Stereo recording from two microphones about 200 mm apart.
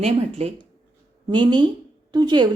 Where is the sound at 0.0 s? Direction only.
30° right (ahead or behind).